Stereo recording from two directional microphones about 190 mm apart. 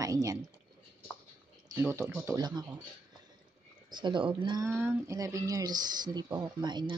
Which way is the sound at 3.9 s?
25° right (ahead or behind).